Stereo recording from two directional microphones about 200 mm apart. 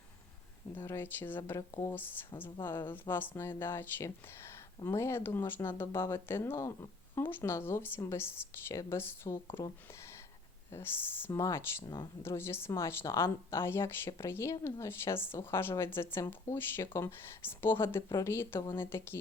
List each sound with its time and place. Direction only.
0.8 s speech: 15° left (ahead or behind)